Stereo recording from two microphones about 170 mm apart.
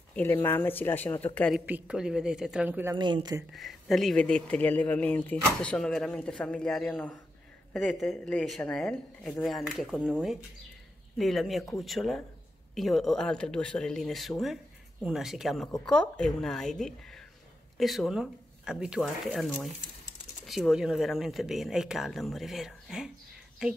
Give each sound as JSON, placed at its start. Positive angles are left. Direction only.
{"t": 0.1, "sound": "a woman's voice", "side_deg": 10}
{"t": 1.5, "sound": "speech", "side_deg": -5}
{"t": 3.0, "sound": "speech", "side_deg": -25}
{"t": 3.5, "sound": "a woman's voice", "side_deg": 0}